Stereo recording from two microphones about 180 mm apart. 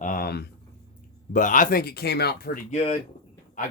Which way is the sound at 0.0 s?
50° left (ahead or behind).